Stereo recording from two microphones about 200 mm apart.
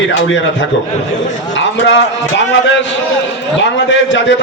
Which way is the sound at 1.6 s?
65° left (ahead or behind).